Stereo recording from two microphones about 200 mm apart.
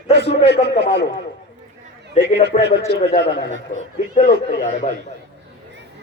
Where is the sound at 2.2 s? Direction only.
35° left (ahead or behind).